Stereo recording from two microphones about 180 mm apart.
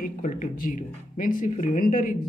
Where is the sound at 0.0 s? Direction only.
45° left (ahead or behind).